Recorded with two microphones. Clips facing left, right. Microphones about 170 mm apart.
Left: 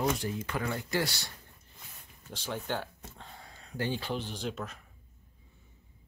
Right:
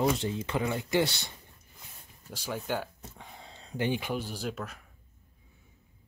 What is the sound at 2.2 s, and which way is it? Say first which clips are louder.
Speech: right 1 dB; 10° right (ahead or behind).